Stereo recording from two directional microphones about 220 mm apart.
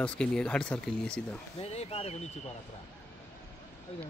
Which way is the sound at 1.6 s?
25° left (ahead or behind).